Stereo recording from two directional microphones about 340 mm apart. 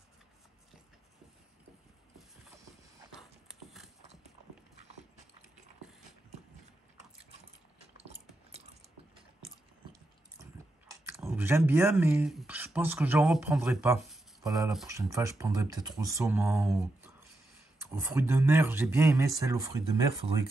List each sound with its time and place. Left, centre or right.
3.2 s horse: centre
8.0 s a sound: centre
10.4 s speech: centre